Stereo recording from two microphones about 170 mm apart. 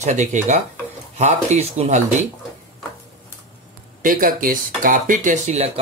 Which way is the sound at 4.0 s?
55° right (ahead or behind).